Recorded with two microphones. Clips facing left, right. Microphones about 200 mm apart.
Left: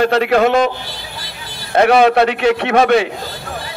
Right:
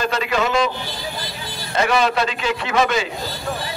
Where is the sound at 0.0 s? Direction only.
60° left (ahead or behind).